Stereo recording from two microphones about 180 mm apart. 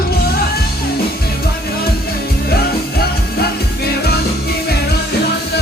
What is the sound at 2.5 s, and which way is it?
Music, 60° left (ahead or behind).